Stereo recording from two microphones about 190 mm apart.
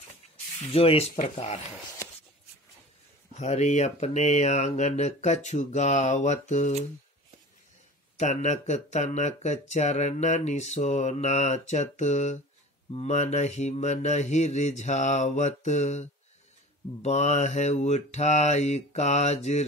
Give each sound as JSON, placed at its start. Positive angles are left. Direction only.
{"t": 0.7, "sound": "speech", "side_deg": 30}
{"t": 3.3, "sound": "speech", "side_deg": 35}
{"t": 8.2, "sound": "speech", "side_deg": 35}